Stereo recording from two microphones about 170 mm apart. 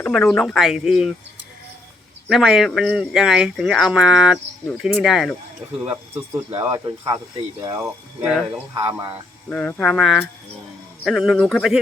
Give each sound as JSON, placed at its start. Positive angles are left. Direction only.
{"t": 0.0, "sound": "speech", "side_deg": 0}
{"t": 2.3, "sound": "speech", "side_deg": -5}
{"t": 5.9, "sound": "speech", "side_deg": -15}
{"t": 8.2, "sound": "speech", "side_deg": 0}
{"t": 8.7, "sound": "speech", "side_deg": -15}
{"t": 9.5, "sound": "speech", "side_deg": 5}